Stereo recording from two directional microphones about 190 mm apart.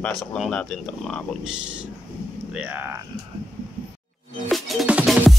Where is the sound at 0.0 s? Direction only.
5° left (ahead or behind).